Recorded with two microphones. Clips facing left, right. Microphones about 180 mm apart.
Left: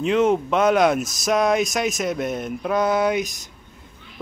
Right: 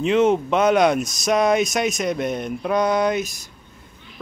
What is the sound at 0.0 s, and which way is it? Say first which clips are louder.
Speech: right 1 dB; centre (ahead or behind).